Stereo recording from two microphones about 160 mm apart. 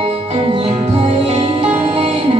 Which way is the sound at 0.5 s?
35° right (ahead or behind).